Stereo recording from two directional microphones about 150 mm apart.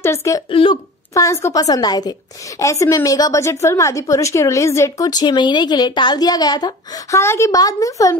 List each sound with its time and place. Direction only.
0.0 s a woman's voice: 20° left (ahead or behind)
0.5 s speech: 35° left (ahead or behind)
1.1 s a woman's voice: 20° left (ahead or behind)